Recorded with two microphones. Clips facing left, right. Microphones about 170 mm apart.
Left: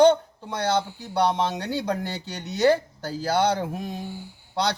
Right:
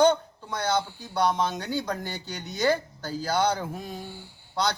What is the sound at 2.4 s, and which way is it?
Music, 70° left (ahead or behind).